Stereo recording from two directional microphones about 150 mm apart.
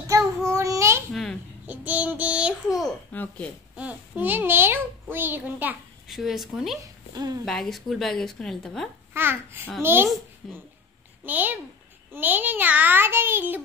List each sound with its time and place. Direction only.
0.5 s child singing: 20° right (ahead or behind)
1.1 s babbling: centre (ahead or behind)
1.7 s a child's voice: 10° right (ahead or behind)
3.1 s speech: 10° left (ahead or behind)
3.7 s a child's voice: 10° right (ahead or behind)
6.1 s a woman's voice: centre (ahead or behind)
6.8 s speech: 25° right (ahead or behind)
7.4 s a woman's voice: centre (ahead or behind)
9.1 s a child's voice: 15° right (ahead or behind)
10.4 s a woman's voice: centre (ahead or behind)
11.2 s a child's voice: 10° right (ahead or behind)